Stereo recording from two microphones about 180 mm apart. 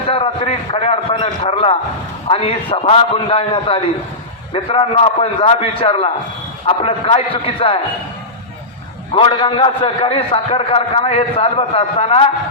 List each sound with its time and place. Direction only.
0.1 s a man's voice: 30° left (ahead or behind)
9.1 s a man's voice: 30° left (ahead or behind)